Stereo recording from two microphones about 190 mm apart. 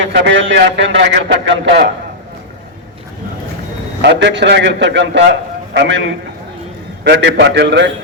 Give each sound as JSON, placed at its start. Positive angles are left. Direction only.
{"t": 0.0, "sound": "a man's voice", "side_deg": -70}
{"t": 4.0, "sound": "a man's voice", "side_deg": -70}